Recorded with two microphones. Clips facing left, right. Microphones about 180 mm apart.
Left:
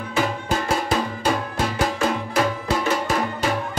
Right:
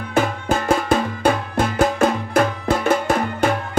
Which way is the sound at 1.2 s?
55° right (ahead or behind).